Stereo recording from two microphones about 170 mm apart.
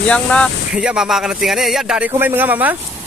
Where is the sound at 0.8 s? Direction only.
5° right (ahead or behind).